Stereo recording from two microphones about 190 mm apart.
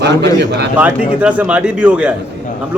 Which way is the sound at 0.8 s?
5° right (ahead or behind).